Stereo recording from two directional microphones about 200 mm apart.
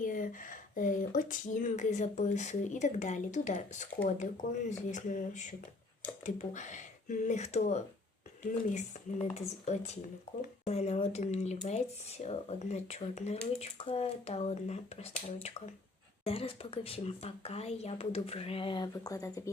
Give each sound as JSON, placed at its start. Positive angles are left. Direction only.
{"t": 0.0, "sound": "speech", "side_deg": 40}
{"t": 16.2, "sound": "speech", "side_deg": 30}